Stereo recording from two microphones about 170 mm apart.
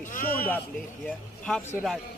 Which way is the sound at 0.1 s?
50° left (ahead or behind).